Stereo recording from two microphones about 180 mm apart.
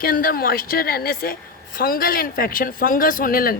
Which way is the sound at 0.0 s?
55° left (ahead or behind).